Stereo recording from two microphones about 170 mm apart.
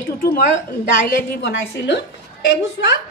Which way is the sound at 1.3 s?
90° left.